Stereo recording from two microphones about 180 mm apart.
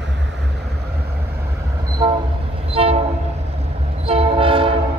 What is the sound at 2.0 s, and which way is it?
Train, 25° right (ahead or behind).